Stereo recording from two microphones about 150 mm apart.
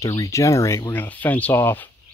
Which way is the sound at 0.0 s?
20° left (ahead or behind).